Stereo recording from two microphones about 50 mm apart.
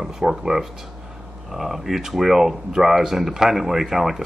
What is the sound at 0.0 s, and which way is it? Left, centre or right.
Speech, centre.